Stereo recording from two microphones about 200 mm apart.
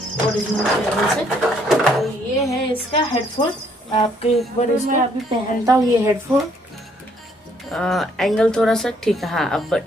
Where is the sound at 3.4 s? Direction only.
25° left (ahead or behind).